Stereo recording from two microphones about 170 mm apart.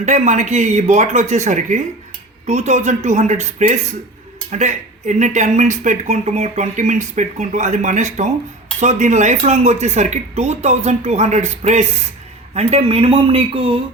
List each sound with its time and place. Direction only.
0.0 s speech: 45° right (ahead or behind)